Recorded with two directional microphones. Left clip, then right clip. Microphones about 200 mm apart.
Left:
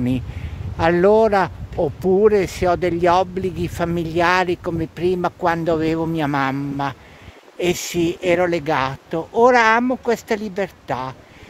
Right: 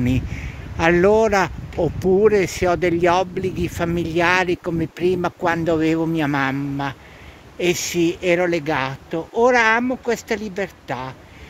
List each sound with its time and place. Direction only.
0.7 s speech: 5° left (ahead or behind)